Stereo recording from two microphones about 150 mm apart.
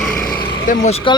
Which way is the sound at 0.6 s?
50° left (ahead or behind).